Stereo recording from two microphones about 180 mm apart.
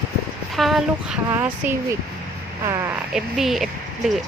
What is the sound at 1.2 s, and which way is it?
Speech, 15° right (ahead or behind).